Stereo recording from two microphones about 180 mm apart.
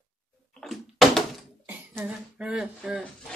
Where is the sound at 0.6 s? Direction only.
Centre (ahead or behind).